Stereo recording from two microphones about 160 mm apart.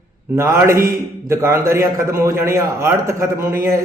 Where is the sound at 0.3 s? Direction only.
15° right (ahead or behind).